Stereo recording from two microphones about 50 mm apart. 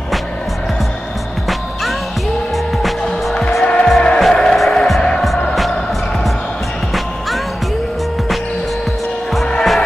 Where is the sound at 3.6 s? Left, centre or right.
Centre.